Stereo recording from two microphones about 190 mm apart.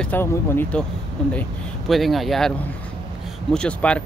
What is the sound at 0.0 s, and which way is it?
Speech, 10° left (ahead or behind).